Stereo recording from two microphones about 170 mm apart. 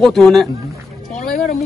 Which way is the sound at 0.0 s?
Centre (ahead or behind).